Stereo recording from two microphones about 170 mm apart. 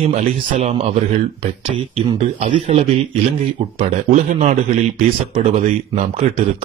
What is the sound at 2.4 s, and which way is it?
Speech, 40° right (ahead or behind).